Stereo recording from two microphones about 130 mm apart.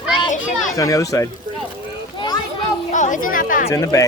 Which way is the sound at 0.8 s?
25° left (ahead or behind).